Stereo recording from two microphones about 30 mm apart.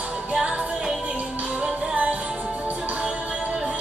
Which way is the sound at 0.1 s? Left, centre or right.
Right.